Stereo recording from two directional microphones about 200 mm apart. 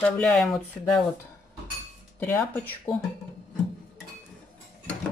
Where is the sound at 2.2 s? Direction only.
5° left (ahead or behind).